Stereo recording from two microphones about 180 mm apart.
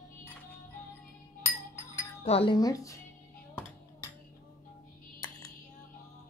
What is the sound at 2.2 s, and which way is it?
Speech, 30° left (ahead or behind).